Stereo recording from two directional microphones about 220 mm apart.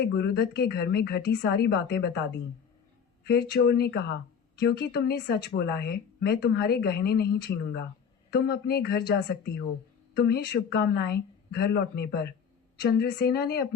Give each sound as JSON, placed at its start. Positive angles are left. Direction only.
{"t": 0.0, "sound": "speech", "side_deg": 50}
{"t": 3.2, "sound": "speech", "side_deg": 50}